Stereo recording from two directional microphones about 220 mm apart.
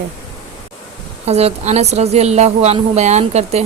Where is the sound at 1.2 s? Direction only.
30° right (ahead or behind).